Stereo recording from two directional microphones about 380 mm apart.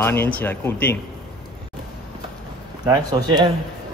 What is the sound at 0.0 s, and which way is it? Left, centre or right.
Speech, centre.